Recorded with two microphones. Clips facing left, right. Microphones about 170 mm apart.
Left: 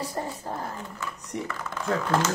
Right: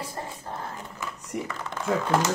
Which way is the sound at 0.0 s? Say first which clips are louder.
Left 4 dB; 40° left (ahead or behind).